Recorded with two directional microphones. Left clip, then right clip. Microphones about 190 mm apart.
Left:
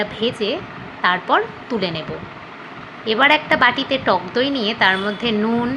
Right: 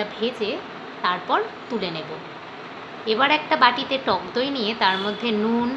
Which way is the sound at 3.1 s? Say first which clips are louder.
Left 5 dB; 20° left (ahead or behind).